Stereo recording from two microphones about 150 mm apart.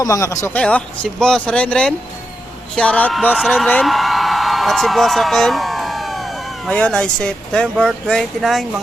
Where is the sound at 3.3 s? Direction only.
Centre (ahead or behind).